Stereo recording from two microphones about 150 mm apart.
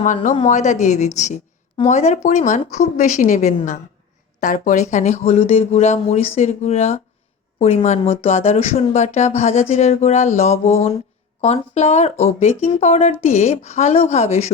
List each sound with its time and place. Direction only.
0.0 s a woman's voice: 55° left (ahead or behind)